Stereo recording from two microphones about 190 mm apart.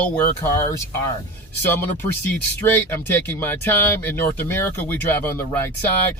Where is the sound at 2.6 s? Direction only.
10° left (ahead or behind).